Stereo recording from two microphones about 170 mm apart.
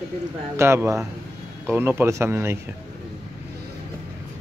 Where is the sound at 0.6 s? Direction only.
15° right (ahead or behind).